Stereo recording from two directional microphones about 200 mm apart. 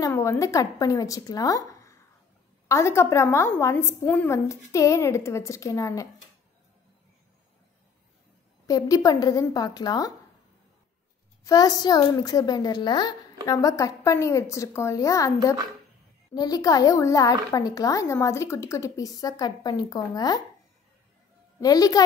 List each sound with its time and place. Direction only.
0.0 s a child's voice: 15° left (ahead or behind)
8.6 s a child's voice: 15° left (ahead or behind)
11.4 s a child's voice: 20° left (ahead or behind)
21.5 s a child's voice: 20° left (ahead or behind)